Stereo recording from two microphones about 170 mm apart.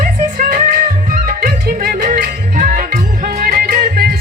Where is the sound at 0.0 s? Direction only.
60° right (ahead or behind).